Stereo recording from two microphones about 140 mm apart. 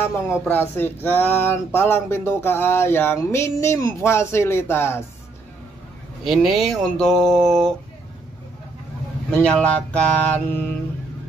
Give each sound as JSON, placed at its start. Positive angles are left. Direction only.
{"t": 0.3, "sound": "speech", "side_deg": 15}
{"t": 6.2, "sound": "speech", "side_deg": 0}
{"t": 9.3, "sound": "speech", "side_deg": 5}